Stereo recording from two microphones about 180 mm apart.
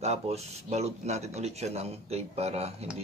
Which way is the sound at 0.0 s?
35° right (ahead or behind).